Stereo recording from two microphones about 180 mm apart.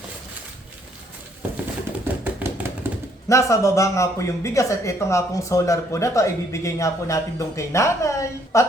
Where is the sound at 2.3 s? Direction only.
10° right (ahead or behind).